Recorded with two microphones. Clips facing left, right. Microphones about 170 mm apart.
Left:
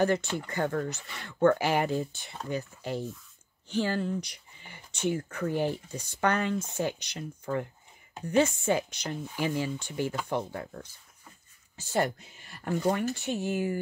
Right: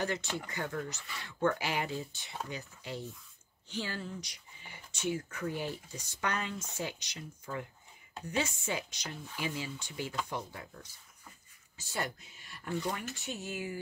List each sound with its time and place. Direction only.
0.0 s speech: 50° left (ahead or behind)
13.2 s speech: 60° left (ahead or behind)